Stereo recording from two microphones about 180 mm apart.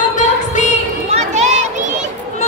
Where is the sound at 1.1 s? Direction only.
40° right (ahead or behind).